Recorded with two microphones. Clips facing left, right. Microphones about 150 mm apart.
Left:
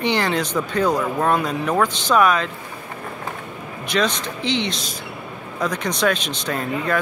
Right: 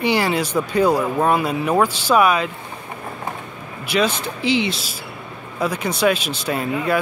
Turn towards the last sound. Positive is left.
turn(degrees=-10)  # may be behind; listen again after turning